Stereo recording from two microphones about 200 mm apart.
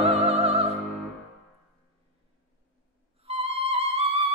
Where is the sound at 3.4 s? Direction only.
30° right (ahead or behind).